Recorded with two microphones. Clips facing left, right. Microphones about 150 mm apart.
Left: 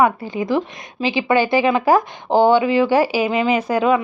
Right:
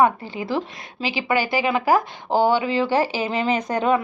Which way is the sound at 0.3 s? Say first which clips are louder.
Left 5 dB; 15° left (ahead or behind).